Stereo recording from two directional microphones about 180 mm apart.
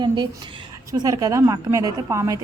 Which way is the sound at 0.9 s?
20° right (ahead or behind).